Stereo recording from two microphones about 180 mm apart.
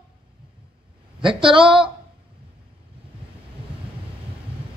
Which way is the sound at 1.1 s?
30° right (ahead or behind).